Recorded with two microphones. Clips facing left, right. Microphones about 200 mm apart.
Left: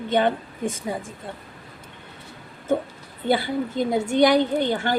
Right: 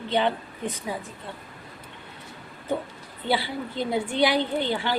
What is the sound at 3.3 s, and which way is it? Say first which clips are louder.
A woman's voice: left 5 dB; 45° left (ahead or behind).